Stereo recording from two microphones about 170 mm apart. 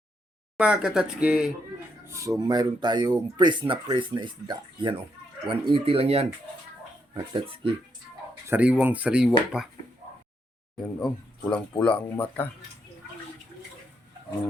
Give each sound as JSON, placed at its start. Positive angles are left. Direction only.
{"t": 0.6, "sound": "speech", "side_deg": -5}
{"t": 2.0, "sound": "speech", "side_deg": -15}
{"t": 8.4, "sound": "speech", "side_deg": -10}
{"t": 10.8, "sound": "speech", "side_deg": 5}